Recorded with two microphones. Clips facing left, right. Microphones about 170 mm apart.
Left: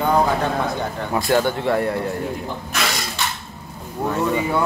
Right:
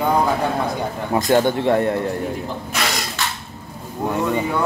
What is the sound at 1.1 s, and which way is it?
Speech, 20° right (ahead or behind).